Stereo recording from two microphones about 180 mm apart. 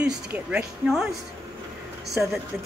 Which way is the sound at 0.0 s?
5° right (ahead or behind).